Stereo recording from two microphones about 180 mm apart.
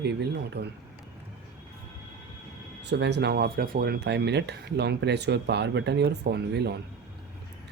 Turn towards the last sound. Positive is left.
turn(degrees=-65)  # may be behind; listen again after turning